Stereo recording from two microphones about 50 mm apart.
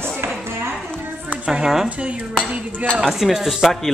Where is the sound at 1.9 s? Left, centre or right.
Right.